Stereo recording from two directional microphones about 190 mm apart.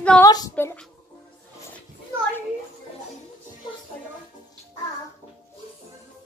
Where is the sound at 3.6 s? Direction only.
25° left (ahead or behind).